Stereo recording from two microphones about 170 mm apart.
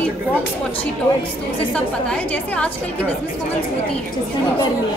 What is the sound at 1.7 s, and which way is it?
A woman's voice, 5° left (ahead or behind).